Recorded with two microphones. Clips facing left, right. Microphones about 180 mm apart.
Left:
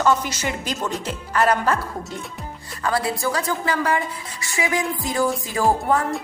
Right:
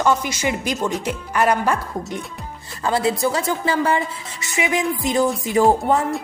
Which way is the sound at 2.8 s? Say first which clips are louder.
Right 3 dB; 25° right (ahead or behind).